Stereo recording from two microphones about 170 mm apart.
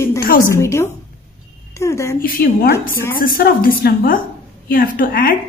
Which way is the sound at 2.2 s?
60° left (ahead or behind).